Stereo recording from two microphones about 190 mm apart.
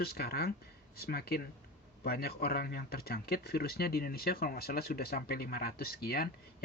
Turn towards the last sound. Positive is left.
turn(degrees=55)  # may be behind; listen again after turning